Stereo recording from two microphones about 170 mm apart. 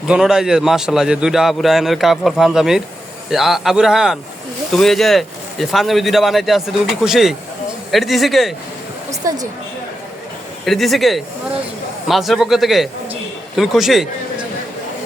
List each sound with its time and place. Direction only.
0.1 s a man's voice: 5° right (ahead or behind)
9.2 s a woman's voice: 20° right (ahead or behind)
10.7 s a man's voice: centre (ahead or behind)